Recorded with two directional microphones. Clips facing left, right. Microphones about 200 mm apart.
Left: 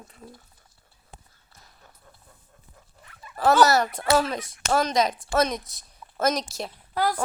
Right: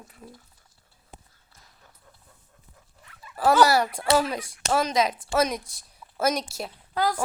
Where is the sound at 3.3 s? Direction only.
10° right (ahead or behind).